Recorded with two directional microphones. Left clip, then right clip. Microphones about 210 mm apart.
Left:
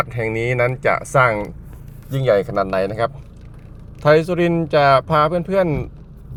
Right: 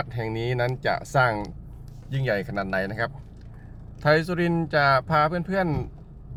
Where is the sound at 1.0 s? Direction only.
15° right (ahead or behind).